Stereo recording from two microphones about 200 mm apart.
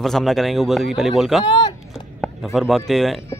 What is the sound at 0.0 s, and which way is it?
Speech, centre (ahead or behind).